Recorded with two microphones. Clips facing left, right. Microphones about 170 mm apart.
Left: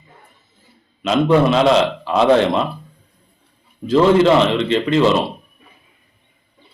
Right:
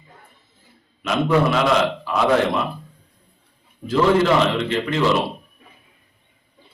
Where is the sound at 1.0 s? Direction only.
25° left (ahead or behind).